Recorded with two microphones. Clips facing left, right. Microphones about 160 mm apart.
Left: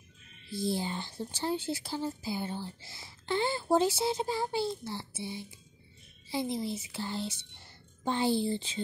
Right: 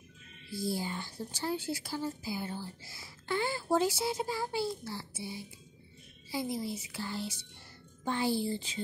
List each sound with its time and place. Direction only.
0.6 s a woman's voice: 25° left (ahead or behind)